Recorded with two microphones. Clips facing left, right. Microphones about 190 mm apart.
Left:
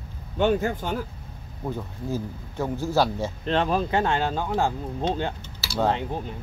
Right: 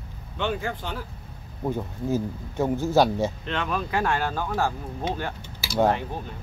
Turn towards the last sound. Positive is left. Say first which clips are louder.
# right 1 dB
turn(degrees=20)  # may be behind; listen again after turning